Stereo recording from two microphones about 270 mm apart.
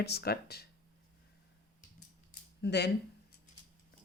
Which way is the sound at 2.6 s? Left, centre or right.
Left.